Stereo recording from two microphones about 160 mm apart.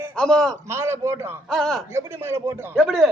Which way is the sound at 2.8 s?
Centre (ahead or behind).